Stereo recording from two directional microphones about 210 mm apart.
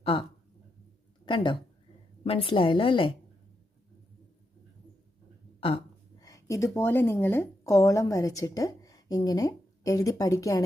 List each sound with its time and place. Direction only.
0.0 s a woman's voice: 25° left (ahead or behind)
5.5 s speech: 25° left (ahead or behind)